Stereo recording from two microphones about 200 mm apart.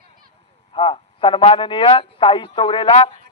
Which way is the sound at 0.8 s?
25° left (ahead or behind).